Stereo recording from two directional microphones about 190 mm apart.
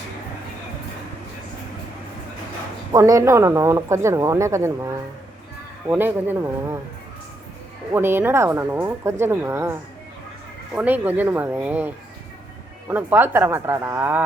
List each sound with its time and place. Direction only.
2.9 s speech: 15° right (ahead or behind)
7.9 s speech: 10° right (ahead or behind)
10.8 s speech: 10° right (ahead or behind)
12.9 s speech: 10° right (ahead or behind)